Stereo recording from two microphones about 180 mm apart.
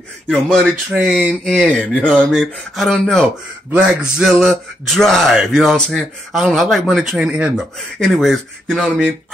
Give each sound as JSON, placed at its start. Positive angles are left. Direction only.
{"t": 0.3, "sound": "speech", "side_deg": 5}